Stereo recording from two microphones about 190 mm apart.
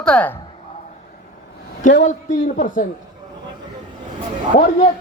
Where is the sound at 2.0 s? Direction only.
40° left (ahead or behind).